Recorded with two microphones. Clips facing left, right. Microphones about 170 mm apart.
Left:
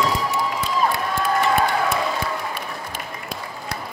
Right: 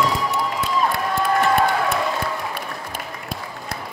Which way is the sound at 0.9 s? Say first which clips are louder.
Right 2 dB; centre (ahead or behind).